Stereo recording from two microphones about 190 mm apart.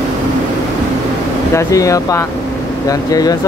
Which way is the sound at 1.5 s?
15° left (ahead or behind).